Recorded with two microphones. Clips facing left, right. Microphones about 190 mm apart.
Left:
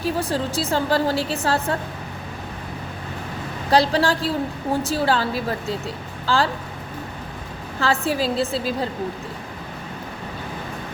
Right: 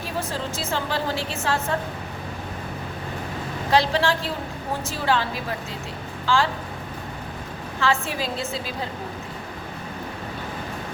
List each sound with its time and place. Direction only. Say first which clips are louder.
0.2 s a woman's voice: left 5 dB; 35° left (ahead or behind)
3.7 s a woman's voice: left 3 dB; 35° left (ahead or behind)
7.8 s a woman's voice: left 3 dB; 35° left (ahead or behind)